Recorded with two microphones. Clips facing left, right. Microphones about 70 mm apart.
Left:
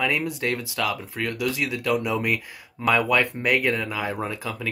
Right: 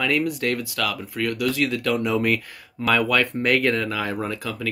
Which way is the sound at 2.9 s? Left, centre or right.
Left.